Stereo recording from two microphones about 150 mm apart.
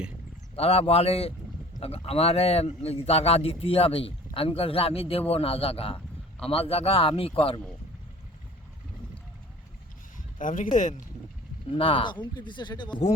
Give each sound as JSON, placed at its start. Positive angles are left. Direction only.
{"t": 0.5, "sound": "a man's voice", "side_deg": 40}
{"t": 10.3, "sound": "speech", "side_deg": 60}
{"t": 11.7, "sound": "a man's voice", "side_deg": 35}